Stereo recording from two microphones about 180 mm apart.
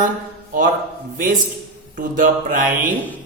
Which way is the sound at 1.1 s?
50° right (ahead or behind).